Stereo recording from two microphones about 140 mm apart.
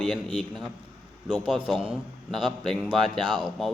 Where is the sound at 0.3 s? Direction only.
5° right (ahead or behind).